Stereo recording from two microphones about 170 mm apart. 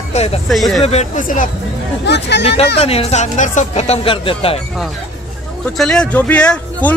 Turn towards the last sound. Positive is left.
turn(degrees=5)  # may be behind; listen again after turning